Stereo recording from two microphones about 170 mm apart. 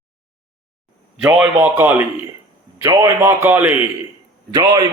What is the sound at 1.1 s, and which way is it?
A man's voice, 5° right (ahead or behind).